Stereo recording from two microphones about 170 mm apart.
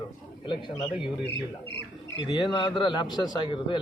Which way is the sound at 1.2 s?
90° left.